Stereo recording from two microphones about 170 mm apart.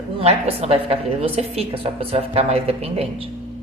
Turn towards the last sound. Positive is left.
turn(degrees=-35)  # may be behind; listen again after turning